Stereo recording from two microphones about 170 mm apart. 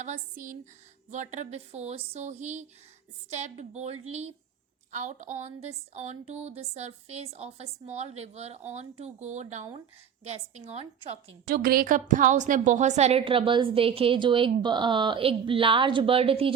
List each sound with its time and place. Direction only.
0.0 s a woman's voice: 45° right (ahead or behind)
11.4 s a woman's voice: 60° right (ahead or behind); by 16.5 s 35° right (ahead or behind)